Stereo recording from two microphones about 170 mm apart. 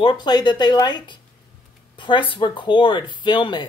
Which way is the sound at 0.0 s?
25° left (ahead or behind).